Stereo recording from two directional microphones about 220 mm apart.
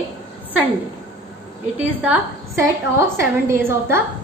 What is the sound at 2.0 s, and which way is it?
A woman's voice, 10° right (ahead or behind).